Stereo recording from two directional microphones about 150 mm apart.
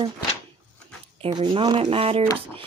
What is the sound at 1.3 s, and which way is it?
Speech, 35° right (ahead or behind).